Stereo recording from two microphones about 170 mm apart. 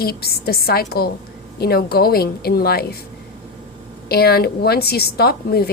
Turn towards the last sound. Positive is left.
turn(degrees=65)  # may be behind; listen again after turning